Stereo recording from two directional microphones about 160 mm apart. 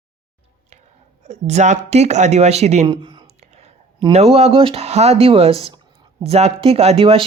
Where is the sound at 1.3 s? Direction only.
45° right (ahead or behind).